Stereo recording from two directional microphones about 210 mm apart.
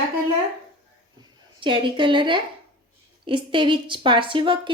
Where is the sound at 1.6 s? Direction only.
25° right (ahead or behind).